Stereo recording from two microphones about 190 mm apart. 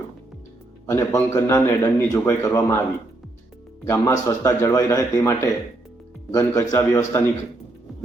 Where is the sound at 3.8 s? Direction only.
15° left (ahead or behind).